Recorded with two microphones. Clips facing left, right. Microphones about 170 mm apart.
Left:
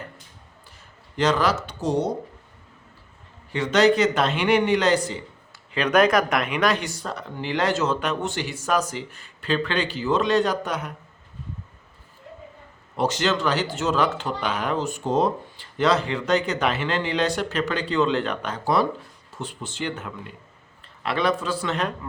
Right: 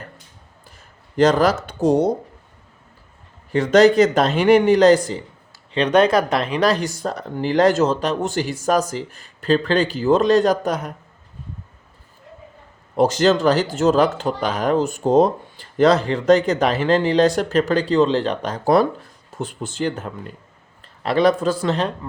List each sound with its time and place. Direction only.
1.1 s a man's voice: 45° right (ahead or behind)
3.5 s a man's voice: 45° right (ahead or behind)
5.7 s speech: 30° right (ahead or behind)
13.0 s speech: 40° right (ahead or behind)